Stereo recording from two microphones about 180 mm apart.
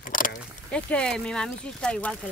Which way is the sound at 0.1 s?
50° left (ahead or behind).